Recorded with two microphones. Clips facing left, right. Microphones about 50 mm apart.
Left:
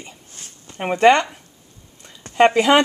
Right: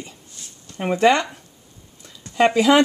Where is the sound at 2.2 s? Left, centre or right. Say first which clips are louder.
Left 3 dB; left.